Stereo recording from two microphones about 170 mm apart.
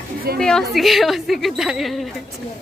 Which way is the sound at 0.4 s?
5° left (ahead or behind).